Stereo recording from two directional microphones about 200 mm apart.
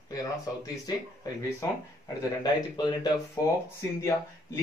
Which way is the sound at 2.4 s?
20° left (ahead or behind).